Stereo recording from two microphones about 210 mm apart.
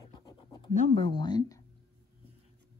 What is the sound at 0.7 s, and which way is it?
Speech, 35° left (ahead or behind).